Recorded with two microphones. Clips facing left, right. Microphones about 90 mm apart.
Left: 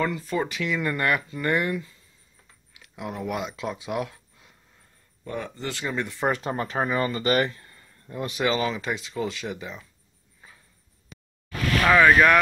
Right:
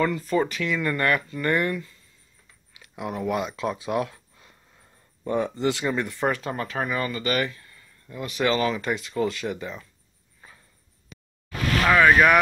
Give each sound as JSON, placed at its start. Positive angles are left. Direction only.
{"t": 0.2, "sound": "speech", "side_deg": 5}
{"t": 2.7, "sound": "speech", "side_deg": 0}
{"t": 5.2, "sound": "speech", "side_deg": -20}
{"t": 5.9, "sound": "speech", "side_deg": 0}
{"t": 6.2, "sound": "speech", "side_deg": 25}
{"t": 8.4, "sound": "speech", "side_deg": 10}
{"t": 10.4, "sound": "a sound", "side_deg": 5}
{"t": 11.8, "sound": "speech", "side_deg": -5}